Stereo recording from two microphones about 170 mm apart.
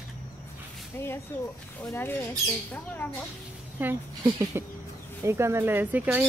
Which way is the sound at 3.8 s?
10° right (ahead or behind).